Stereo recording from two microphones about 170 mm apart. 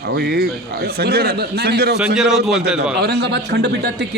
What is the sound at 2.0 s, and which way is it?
Speech, 5° right (ahead or behind).